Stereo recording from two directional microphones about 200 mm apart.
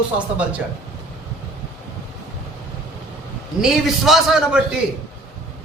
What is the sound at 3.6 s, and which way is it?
Speech, centre (ahead or behind).